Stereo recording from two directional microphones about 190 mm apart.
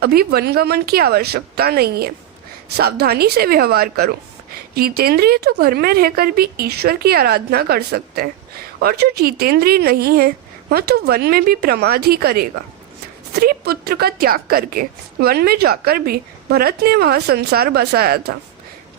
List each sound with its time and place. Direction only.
0.0 s a woman's voice: 55° right (ahead or behind)